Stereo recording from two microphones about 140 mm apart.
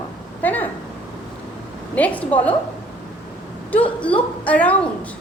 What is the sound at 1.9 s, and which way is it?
Speech, 10° left (ahead or behind).